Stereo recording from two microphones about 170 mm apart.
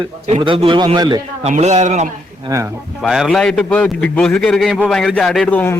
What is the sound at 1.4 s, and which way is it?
Speech, 40° right (ahead or behind).